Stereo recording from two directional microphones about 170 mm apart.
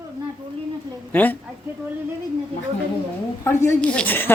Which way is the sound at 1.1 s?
10° left (ahead or behind).